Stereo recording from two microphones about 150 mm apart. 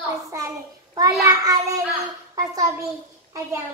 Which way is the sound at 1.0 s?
20° right (ahead or behind).